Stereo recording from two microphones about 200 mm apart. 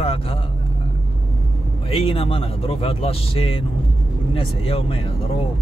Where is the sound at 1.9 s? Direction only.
30° left (ahead or behind).